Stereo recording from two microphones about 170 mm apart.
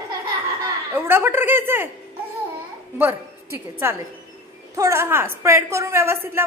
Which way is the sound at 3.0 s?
15° right (ahead or behind).